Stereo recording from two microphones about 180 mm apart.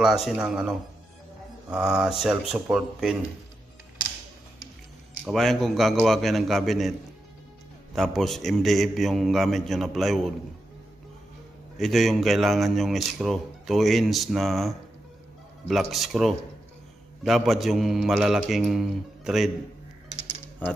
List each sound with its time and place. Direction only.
0.0 s speech: centre (ahead or behind)
5.2 s speech: centre (ahead or behind)
11.8 s speech: centre (ahead or behind)